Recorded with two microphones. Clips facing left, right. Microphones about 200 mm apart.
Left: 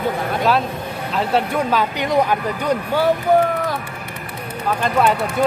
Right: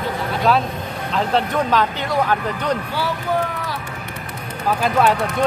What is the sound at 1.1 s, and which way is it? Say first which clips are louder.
Speech: even; 5° left (ahead or behind).